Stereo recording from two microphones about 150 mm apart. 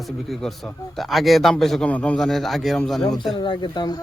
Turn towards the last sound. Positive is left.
turn(degrees=30)  # may be behind; listen again after turning